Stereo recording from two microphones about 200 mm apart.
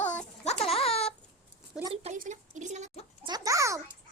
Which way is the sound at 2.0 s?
35° right (ahead or behind).